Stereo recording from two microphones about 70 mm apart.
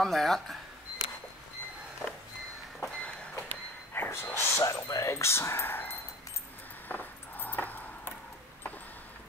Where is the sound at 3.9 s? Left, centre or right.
Left.